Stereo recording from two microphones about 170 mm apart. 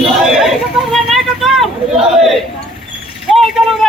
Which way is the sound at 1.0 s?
Centre (ahead or behind).